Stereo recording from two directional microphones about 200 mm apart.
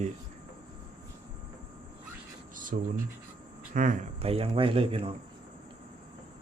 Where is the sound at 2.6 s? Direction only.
40° right (ahead or behind).